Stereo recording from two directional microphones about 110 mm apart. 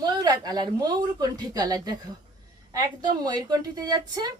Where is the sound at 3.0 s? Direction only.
40° right (ahead or behind).